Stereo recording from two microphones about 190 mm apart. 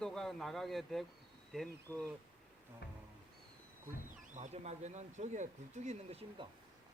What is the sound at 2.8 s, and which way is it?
Music, 60° left (ahead or behind).